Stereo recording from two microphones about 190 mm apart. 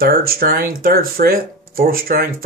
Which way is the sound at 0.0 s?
50° right (ahead or behind).